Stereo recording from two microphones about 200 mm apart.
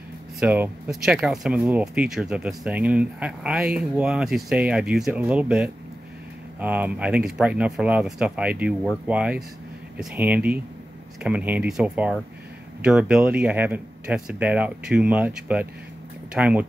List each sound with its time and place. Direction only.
0.4 s speech: 5° right (ahead or behind)